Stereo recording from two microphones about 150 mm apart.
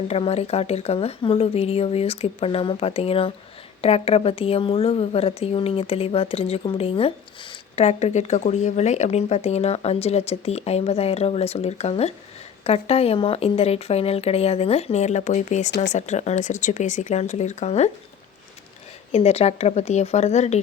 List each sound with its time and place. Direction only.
0.1 s a woman's voice: 45° left (ahead or behind)
19.1 s a woman's voice: 45° left (ahead or behind)